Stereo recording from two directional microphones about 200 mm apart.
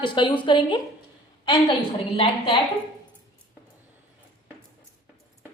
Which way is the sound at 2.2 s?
25° left (ahead or behind).